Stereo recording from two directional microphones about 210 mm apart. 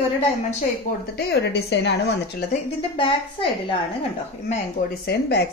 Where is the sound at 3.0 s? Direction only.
25° left (ahead or behind).